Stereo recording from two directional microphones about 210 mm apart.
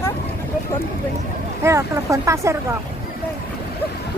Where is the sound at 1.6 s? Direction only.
15° right (ahead or behind).